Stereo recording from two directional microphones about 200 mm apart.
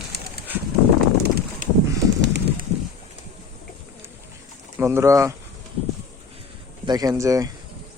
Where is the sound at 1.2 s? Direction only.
50° right (ahead or behind).